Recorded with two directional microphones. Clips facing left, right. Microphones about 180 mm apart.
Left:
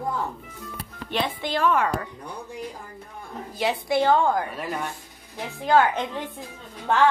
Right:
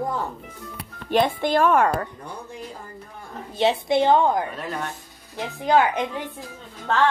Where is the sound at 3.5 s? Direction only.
25° right (ahead or behind).